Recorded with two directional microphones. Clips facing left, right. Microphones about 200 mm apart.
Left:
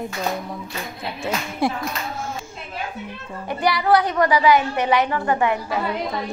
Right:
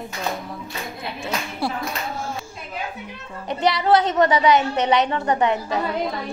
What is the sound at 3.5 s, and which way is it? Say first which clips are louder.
A woman's voice: even; 20° right (ahead or behind).